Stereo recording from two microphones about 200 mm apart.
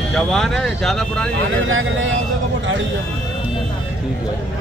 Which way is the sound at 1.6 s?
75° right (ahead or behind).